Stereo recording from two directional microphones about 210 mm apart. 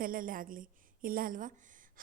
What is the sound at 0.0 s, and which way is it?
A woman's voice, 40° right (ahead or behind).